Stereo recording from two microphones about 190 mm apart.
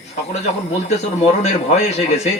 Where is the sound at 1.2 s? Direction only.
35° left (ahead or behind).